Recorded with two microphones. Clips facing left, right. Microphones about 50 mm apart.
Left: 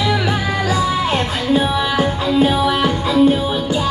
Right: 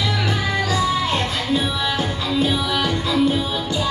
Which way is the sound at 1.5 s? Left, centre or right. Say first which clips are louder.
Left 7 dB; left.